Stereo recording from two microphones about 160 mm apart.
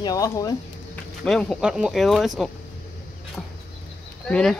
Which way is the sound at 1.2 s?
5° left (ahead or behind).